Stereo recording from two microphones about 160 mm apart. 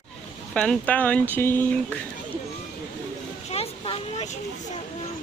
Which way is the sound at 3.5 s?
40° left (ahead or behind).